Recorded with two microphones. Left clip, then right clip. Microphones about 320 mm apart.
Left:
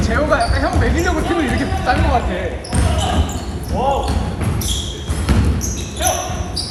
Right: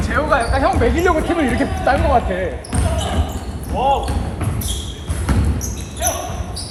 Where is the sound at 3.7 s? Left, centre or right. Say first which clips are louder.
Right 1 dB; right.